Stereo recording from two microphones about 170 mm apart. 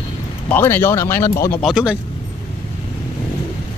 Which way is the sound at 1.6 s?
5° right (ahead or behind).